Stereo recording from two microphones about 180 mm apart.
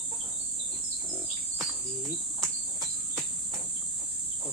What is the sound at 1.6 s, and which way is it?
Cricket, centre (ahead or behind).